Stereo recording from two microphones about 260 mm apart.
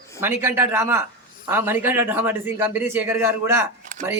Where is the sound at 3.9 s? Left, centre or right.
Right.